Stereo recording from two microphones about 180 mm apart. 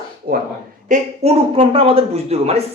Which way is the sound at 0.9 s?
35° right (ahead or behind).